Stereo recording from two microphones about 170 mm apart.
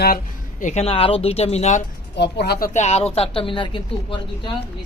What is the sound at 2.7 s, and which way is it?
Speech, 40° left (ahead or behind).